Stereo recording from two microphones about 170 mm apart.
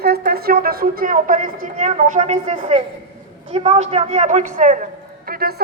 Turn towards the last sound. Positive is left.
turn(degrees=-65)  # may be behind; listen again after turning